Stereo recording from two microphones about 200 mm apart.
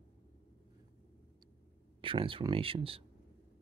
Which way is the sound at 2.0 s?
25° right (ahead or behind).